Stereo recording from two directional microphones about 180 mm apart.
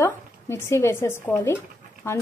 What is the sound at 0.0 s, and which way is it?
Speech, 15° left (ahead or behind).